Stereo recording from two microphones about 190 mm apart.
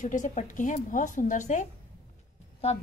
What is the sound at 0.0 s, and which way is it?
A woman's voice, 40° left (ahead or behind).